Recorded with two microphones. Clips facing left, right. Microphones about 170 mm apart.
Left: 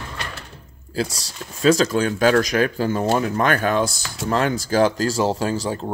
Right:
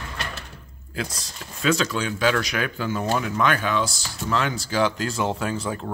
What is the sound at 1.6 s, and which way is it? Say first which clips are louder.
Speech: left 6 dB; 40° left (ahead or behind).